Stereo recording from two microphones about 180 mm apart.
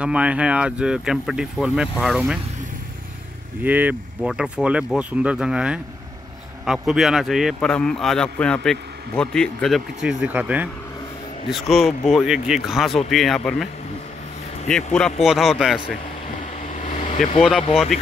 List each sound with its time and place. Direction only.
0.0 s a man's voice: 5° right (ahead or behind)
3.6 s a man's voice: 10° right (ahead or behind)
11.4 s speech: 30° left (ahead or behind)
12.1 s a man's voice: 5° right (ahead or behind)
14.7 s a man's voice: 5° left (ahead or behind)
16.8 s air conditioning: 45° left (ahead or behind)
17.4 s a man's voice: centre (ahead or behind)